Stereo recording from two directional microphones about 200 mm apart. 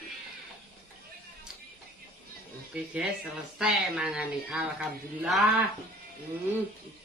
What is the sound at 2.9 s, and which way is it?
Speech, 5° right (ahead or behind).